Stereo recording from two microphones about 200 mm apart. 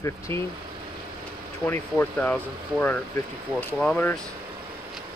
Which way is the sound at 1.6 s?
10° left (ahead or behind).